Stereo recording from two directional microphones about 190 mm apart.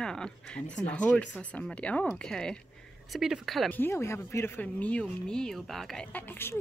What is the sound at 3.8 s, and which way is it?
Speech, 15° left (ahead or behind).